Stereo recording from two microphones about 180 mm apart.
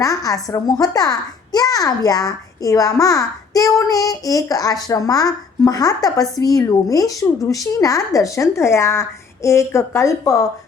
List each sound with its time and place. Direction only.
0.0 s a child's voice: 20° left (ahead or behind)